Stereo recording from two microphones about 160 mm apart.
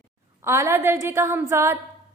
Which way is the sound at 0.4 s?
15° right (ahead or behind).